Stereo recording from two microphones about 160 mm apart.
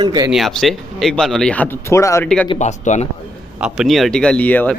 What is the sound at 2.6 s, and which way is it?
Speech, 45° left (ahead or behind).